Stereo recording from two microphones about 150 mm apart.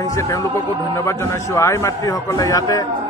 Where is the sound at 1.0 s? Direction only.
20° left (ahead or behind).